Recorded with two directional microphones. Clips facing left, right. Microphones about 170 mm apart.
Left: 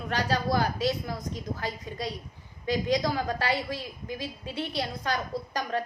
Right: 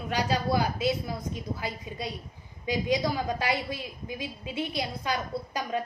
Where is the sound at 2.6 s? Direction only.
15° right (ahead or behind).